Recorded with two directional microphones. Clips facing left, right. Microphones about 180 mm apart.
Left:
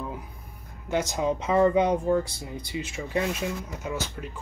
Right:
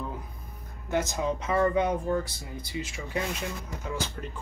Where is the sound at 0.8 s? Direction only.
15° left (ahead or behind).